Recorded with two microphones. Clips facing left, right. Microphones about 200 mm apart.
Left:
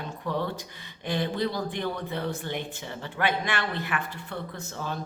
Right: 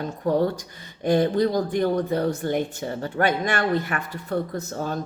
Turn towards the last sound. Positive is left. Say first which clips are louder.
# right 7 dB
turn(degrees=-45)  # may be behind; listen again after turning